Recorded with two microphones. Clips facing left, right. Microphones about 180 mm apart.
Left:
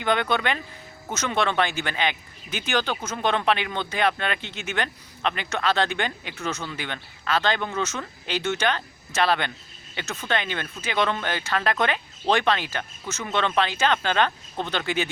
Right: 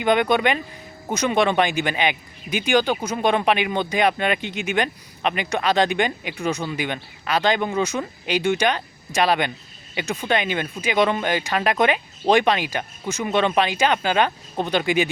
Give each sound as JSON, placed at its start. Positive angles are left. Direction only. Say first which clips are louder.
{"t": 0.0, "sound": "speech", "louder": "right 5 dB", "side_deg": -15}